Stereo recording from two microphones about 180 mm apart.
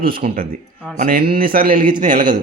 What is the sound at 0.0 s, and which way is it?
Speech, 55° right (ahead or behind).